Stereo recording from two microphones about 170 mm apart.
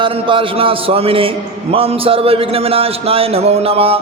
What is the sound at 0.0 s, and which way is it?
A man's voice, 30° right (ahead or behind).